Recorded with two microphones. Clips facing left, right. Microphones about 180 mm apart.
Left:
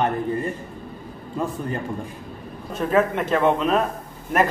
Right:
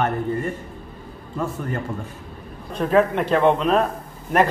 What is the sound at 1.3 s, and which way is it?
Speech, 15° left (ahead or behind).